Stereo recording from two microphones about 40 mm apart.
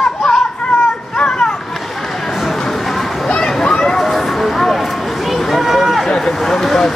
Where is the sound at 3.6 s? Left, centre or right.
Centre.